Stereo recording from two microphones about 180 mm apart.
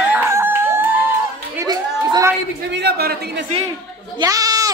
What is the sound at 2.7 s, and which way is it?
Speech, 65° right (ahead or behind).